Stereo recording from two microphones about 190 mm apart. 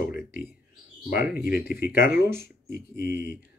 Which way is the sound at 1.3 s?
55° left (ahead or behind).